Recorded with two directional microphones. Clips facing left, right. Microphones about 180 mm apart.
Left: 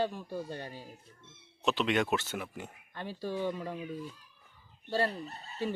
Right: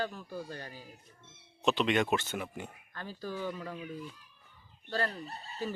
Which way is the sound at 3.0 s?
20° left (ahead or behind).